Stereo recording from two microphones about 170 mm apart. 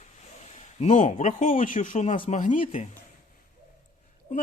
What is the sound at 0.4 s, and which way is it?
Speech, 40° left (ahead or behind).